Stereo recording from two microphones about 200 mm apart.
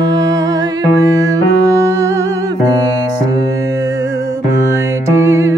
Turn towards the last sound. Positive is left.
turn(degrees=-15)  # may be behind; listen again after turning